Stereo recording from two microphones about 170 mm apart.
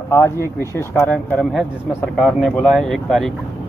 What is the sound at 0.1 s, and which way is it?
Speech, 15° left (ahead or behind).